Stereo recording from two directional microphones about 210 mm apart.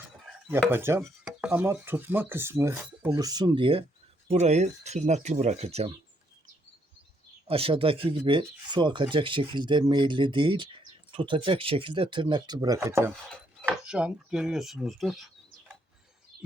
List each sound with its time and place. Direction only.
0.4 s speech: 10° right (ahead or behind); by 5.9 s 30° right (ahead or behind)
7.4 s speech: 25° right (ahead or behind); by 15.3 s centre (ahead or behind)